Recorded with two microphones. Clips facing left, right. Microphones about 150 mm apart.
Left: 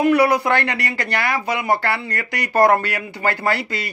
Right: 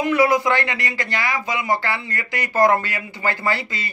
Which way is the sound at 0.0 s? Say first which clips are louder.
Left 2 dB; 65° left (ahead or behind).